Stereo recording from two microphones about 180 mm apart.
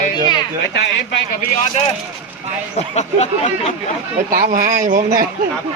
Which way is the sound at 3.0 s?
40° left (ahead or behind).